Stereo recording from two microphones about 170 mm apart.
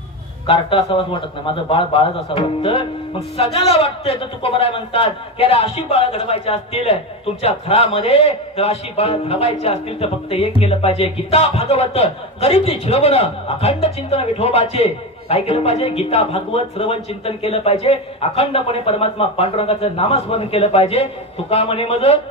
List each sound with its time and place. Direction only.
0.5 s a man's voice: 30° left (ahead or behind)